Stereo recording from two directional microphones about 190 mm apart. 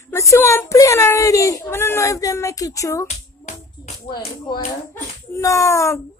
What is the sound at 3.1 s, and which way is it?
Music, 35° left (ahead or behind).